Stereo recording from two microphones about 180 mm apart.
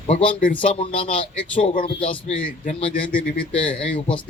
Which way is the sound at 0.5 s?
30° left (ahead or behind).